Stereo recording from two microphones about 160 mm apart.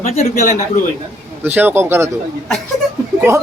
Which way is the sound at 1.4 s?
10° right (ahead or behind).